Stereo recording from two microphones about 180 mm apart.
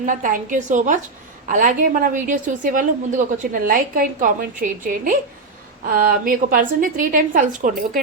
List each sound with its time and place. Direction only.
0.0 s a woman's voice: 45° right (ahead or behind)